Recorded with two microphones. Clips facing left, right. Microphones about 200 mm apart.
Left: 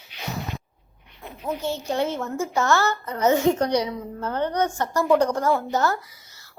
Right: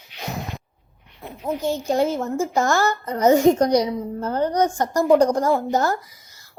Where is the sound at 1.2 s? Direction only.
15° right (ahead or behind).